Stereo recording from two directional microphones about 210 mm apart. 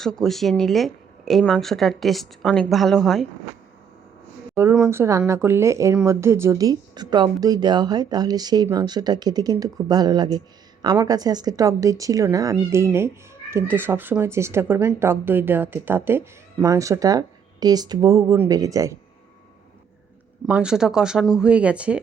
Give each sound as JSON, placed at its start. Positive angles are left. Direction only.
{"t": 0.0, "sound": "a woman's voice", "side_deg": 0}
{"t": 4.5, "sound": "speech", "side_deg": -10}
{"t": 20.5, "sound": "a woman's voice", "side_deg": -5}